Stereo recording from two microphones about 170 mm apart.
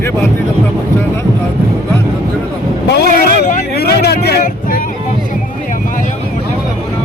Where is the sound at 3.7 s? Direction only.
70° left (ahead or behind).